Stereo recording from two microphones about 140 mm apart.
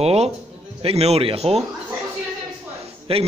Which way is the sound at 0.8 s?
50° right (ahead or behind).